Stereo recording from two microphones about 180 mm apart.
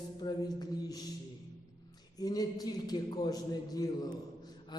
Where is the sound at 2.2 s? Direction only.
20° left (ahead or behind).